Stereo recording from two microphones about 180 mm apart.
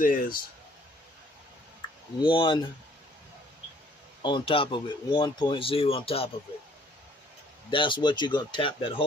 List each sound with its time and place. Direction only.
0.0 s speech: 50° left (ahead or behind)
2.2 s speech: 30° left (ahead or behind)
4.2 s speech: 25° left (ahead or behind)
7.7 s speech: 30° left (ahead or behind)